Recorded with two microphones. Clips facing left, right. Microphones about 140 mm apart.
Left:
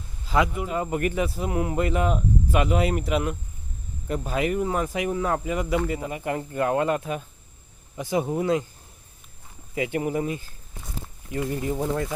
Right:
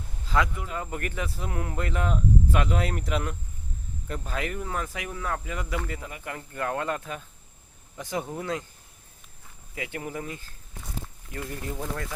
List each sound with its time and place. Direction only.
0.3 s speech: 15° left (ahead or behind)
9.7 s speech: 20° left (ahead or behind)